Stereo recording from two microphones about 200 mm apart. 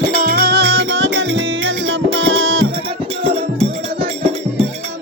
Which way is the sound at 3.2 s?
25° right (ahead or behind).